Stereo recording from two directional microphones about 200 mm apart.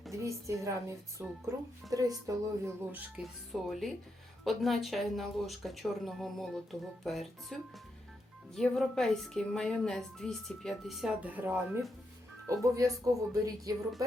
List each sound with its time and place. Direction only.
0.1 s a woman's voice: 15° right (ahead or behind)